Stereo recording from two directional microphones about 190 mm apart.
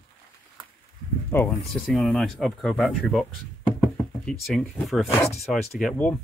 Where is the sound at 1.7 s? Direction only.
Centre (ahead or behind).